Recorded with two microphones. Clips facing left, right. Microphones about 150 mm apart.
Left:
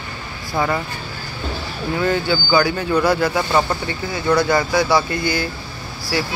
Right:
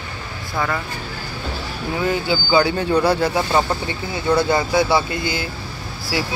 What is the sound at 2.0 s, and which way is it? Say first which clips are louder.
Speech: left 1 dB; 15° right (ahead or behind).